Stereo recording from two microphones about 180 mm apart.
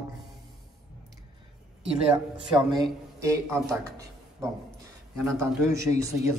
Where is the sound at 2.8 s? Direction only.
15° right (ahead or behind).